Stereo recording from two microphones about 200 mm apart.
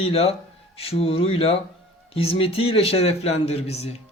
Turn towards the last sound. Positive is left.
turn(degrees=30)  # may be behind; listen again after turning